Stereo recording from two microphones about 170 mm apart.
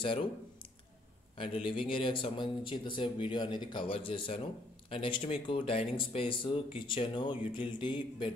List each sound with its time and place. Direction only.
0.0 s speech: 30° left (ahead or behind)
1.4 s speech: 30° left (ahead or behind)